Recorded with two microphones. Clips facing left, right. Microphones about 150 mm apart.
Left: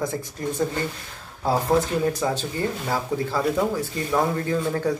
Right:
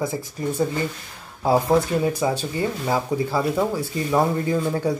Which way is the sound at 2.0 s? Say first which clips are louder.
Right 2 dB; 10° right (ahead or behind).